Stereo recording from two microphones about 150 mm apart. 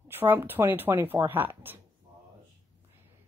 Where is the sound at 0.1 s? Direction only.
15° right (ahead or behind).